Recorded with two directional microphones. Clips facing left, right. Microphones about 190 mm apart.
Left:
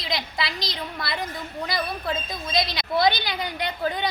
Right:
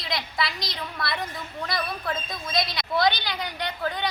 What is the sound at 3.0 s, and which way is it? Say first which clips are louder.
A woman's voice: left 2 dB; 10° left (ahead or behind).